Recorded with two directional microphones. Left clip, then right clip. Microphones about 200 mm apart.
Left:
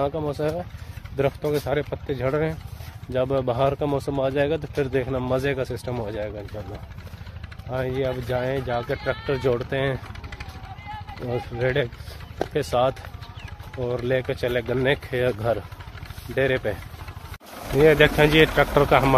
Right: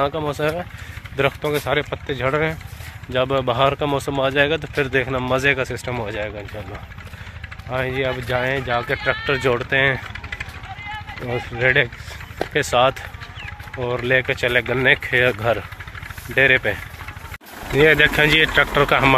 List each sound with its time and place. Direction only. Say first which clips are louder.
0.4 s speech: right 4 dB; 5° right (ahead or behind)
7.7 s speech: right 4 dB; centre (ahead or behind)
10.3 s vehicle: right 8 dB; 65° left (ahead or behind)
11.5 s speech: right 8 dB; centre (ahead or behind)
17.7 s speech: right 2 dB; centre (ahead or behind)